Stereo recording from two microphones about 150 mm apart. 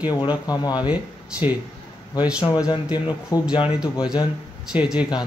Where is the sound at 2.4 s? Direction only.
25° left (ahead or behind).